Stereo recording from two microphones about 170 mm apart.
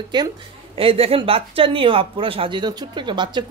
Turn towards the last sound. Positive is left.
turn(degrees=-25)  # may be behind; listen again after turning